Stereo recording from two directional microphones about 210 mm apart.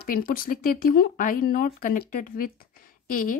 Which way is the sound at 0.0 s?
40° left (ahead or behind).